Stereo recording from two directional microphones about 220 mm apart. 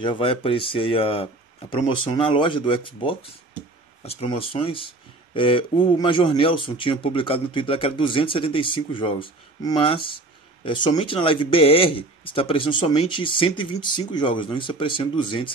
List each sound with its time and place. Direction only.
0.0 s speech: 25° left (ahead or behind)